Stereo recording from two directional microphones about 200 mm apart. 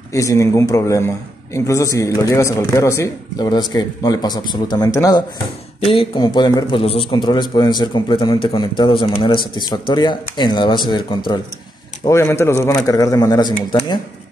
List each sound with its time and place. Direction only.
0.1 s a man's voice: 15° left (ahead or behind)